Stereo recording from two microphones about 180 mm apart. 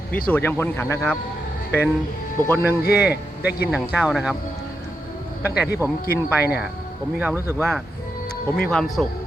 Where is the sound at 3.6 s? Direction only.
5° right (ahead or behind).